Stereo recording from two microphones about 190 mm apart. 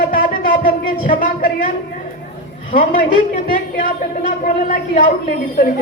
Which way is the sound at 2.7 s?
45° left (ahead or behind).